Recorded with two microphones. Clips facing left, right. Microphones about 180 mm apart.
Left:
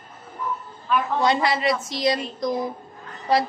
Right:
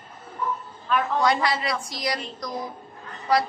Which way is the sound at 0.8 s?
Centre (ahead or behind).